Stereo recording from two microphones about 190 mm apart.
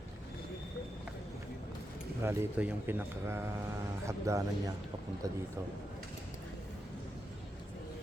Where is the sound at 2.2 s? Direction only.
10° right (ahead or behind).